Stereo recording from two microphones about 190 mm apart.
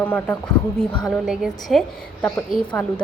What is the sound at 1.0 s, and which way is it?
A woman's voice, centre (ahead or behind).